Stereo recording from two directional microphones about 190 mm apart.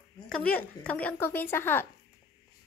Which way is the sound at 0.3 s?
5° left (ahead or behind).